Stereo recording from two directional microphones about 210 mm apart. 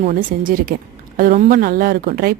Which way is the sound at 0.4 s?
40° right (ahead or behind).